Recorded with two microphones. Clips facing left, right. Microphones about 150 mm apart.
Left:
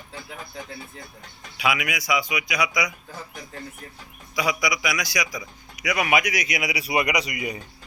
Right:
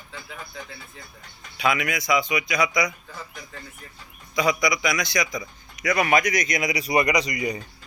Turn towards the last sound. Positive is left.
turn(degrees=10)  # may be behind; listen again after turning